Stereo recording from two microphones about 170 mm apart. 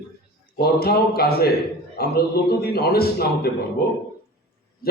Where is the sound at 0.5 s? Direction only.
65° left (ahead or behind).